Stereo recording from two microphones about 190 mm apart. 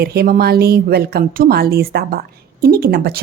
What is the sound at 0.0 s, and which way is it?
A woman's voice, 55° right (ahead or behind).